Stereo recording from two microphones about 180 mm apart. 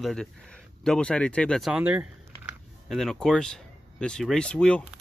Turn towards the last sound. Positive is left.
turn(degrees=5)  # may be behind; listen again after turning